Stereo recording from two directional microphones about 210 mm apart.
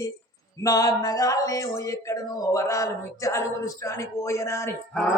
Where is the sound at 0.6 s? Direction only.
15° left (ahead or behind).